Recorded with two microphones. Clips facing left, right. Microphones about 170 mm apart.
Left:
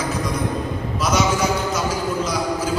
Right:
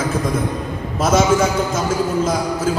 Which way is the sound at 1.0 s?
50° right (ahead or behind).